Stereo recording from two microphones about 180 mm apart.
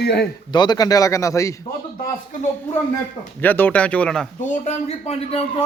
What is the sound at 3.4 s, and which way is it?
Speech, 10° left (ahead or behind).